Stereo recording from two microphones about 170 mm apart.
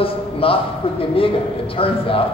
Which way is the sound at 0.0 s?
35° left (ahead or behind).